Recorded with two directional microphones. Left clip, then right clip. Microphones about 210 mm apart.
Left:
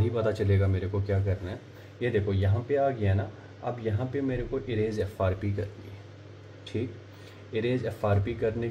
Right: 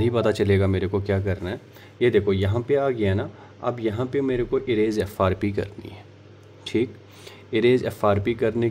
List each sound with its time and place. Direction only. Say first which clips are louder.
0.0 s a man's voice: right 7 dB; 45° right (ahead or behind)
7.5 s speech: right 10 dB; 55° right (ahead or behind)